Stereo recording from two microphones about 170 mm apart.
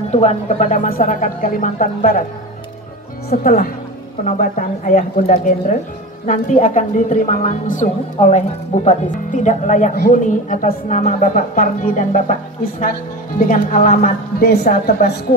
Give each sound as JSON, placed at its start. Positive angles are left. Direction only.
{"t": 0.1, "sound": "a woman's voice", "side_deg": 40}
{"t": 3.3, "sound": "a woman's voice", "side_deg": 55}
{"t": 13.4, "sound": "a woman's voice", "side_deg": 50}